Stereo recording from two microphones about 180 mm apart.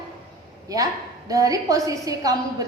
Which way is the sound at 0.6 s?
20° right (ahead or behind).